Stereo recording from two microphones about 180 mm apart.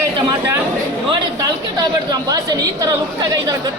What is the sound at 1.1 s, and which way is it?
A woman's voice, 25° right (ahead or behind).